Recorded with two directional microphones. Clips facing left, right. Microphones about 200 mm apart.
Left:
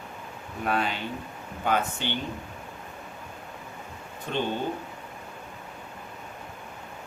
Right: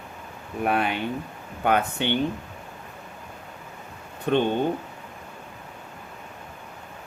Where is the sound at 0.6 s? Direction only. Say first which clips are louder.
Right 3 dB; 60° right (ahead or behind).